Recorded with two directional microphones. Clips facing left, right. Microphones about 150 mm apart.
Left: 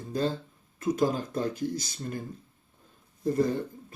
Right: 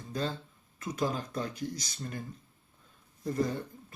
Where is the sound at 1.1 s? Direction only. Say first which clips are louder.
Left 5 dB; 40° left (ahead or behind).